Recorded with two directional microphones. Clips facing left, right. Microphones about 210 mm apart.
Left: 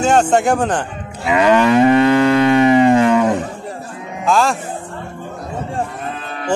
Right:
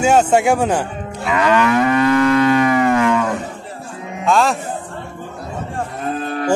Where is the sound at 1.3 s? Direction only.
15° left (ahead or behind).